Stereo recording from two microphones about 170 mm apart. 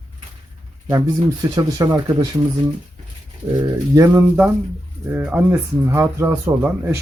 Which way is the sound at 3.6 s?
20° right (ahead or behind).